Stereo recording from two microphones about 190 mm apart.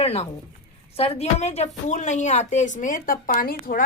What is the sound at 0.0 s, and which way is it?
A woman's voice, 30° left (ahead or behind).